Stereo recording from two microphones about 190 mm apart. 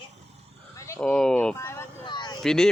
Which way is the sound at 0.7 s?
15° left (ahead or behind).